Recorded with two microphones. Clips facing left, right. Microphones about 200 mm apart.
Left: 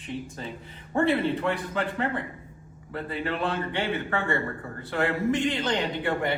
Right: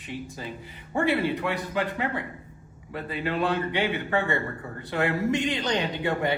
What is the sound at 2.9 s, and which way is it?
A man's voice, 15° right (ahead or behind).